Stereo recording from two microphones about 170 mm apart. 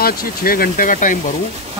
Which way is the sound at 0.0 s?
60° left (ahead or behind).